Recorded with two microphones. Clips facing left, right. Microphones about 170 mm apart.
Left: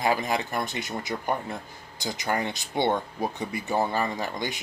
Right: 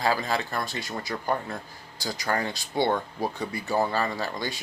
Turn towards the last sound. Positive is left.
turn(degrees=20)  # may be behind; listen again after turning